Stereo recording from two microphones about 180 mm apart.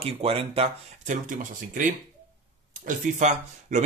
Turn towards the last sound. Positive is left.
turn(degrees=-40)  # may be behind; listen again after turning